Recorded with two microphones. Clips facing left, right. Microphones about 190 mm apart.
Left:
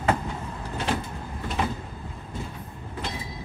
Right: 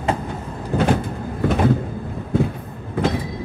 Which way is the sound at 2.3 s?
65° right (ahead or behind).